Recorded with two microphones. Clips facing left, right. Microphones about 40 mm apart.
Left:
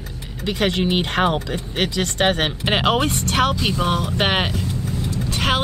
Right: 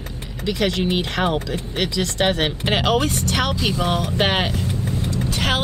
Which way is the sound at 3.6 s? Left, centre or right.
Centre.